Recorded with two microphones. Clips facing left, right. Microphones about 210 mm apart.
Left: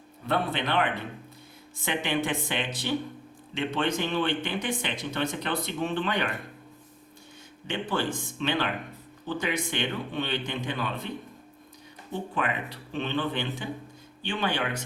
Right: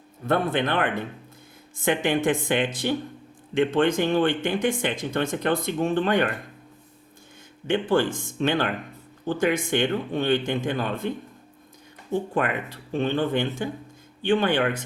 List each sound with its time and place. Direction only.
0.3 s speech: 50° right (ahead or behind)
7.7 s speech: 50° right (ahead or behind)
12.3 s speech: 45° right (ahead or behind)